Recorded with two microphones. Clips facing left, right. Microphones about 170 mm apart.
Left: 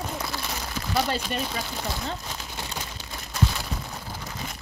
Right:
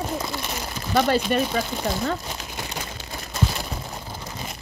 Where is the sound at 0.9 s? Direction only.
60° right (ahead or behind).